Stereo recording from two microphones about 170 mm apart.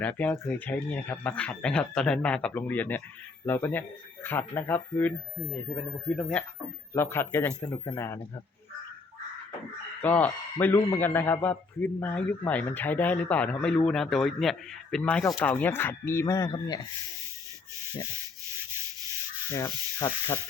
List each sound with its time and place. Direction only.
0.0 s a man's voice: 10° left (ahead or behind)
10.0 s a man's voice: 10° left (ahead or behind)
19.5 s sanding: 20° left (ahead or behind)